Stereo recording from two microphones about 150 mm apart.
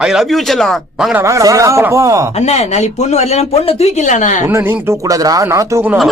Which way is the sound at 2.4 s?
45° left (ahead or behind).